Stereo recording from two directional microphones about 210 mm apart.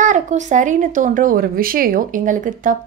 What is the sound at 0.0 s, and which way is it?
A woman's voice, 35° right (ahead or behind).